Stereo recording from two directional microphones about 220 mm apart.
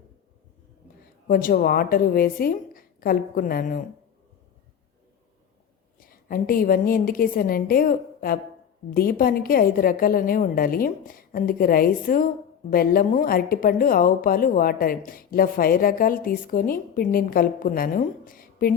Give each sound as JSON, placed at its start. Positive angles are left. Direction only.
{"t": 1.3, "sound": "a woman's voice", "side_deg": 40}
{"t": 6.1, "sound": "a woman's voice", "side_deg": 40}